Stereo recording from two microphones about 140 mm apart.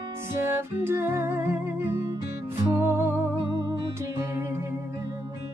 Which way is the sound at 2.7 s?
15° right (ahead or behind).